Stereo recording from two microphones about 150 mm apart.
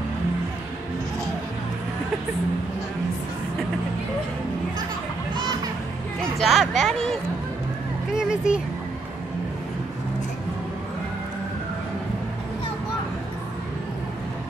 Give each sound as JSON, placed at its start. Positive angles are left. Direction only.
{"t": 6.4, "sound": "speech", "side_deg": 0}
{"t": 8.2, "sound": "speech", "side_deg": -5}